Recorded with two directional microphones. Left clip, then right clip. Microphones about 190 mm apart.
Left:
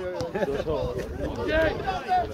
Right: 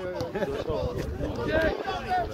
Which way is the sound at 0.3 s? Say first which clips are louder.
Left 5 dB; 45° left (ahead or behind).